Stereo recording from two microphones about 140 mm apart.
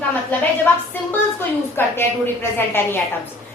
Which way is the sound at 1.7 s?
15° left (ahead or behind).